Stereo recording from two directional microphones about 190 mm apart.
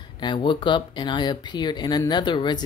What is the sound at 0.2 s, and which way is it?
Speech, 25° left (ahead or behind).